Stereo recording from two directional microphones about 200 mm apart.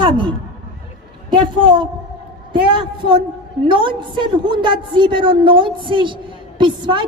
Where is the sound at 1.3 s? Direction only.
25° right (ahead or behind).